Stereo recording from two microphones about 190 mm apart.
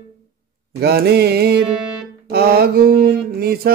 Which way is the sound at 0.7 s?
55° right (ahead or behind).